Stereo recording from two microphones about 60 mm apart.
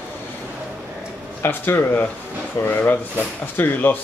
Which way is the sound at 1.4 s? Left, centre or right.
Left.